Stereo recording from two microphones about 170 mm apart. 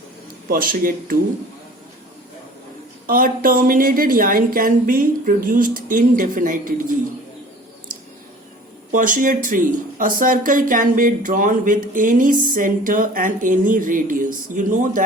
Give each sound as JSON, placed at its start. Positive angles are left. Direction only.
{"t": 0.4, "sound": "speech", "side_deg": -55}
{"t": 3.1, "sound": "speech", "side_deg": -55}
{"t": 8.9, "sound": "speech", "side_deg": -50}